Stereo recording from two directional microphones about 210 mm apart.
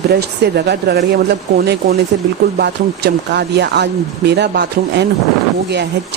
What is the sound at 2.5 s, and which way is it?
Speech, 50° right (ahead or behind).